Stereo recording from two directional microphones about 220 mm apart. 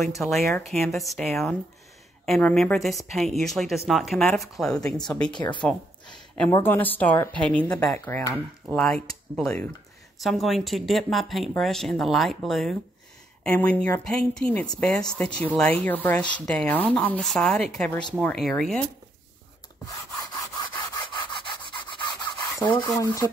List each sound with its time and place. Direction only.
0.1 s speech: centre (ahead or behind)
5.3 s speech: 20° left (ahead or behind)
6.1 s a sound: 5° left (ahead or behind)
6.5 s a woman's voice: 10° left (ahead or behind)
20.9 s rub: 20° left (ahead or behind)
22.6 s a woman's voice: 20° left (ahead or behind)